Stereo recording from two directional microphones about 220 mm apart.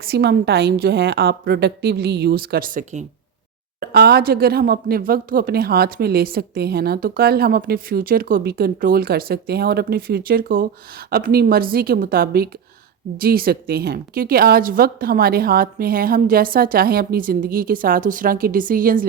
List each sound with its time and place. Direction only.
0.0 s a woman's voice: 45° right (ahead or behind)